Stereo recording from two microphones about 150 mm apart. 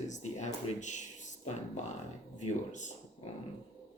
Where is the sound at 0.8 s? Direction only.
55° left (ahead or behind).